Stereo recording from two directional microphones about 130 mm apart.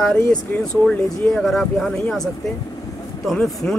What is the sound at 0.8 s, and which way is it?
Speech, 5° left (ahead or behind).